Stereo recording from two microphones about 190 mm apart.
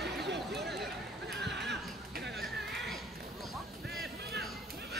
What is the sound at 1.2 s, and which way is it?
Neigh, 65° right (ahead or behind).